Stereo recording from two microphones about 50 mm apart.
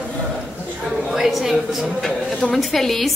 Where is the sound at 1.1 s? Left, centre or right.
Centre.